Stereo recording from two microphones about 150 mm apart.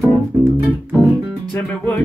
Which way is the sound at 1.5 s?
10° left (ahead or behind).